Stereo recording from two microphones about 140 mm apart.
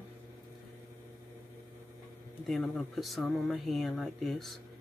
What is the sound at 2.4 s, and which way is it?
Speech, centre (ahead or behind).